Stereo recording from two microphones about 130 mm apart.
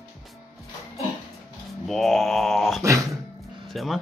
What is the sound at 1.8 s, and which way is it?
Mantra, centre (ahead or behind).